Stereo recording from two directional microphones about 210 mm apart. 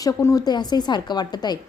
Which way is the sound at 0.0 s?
15° left (ahead or behind).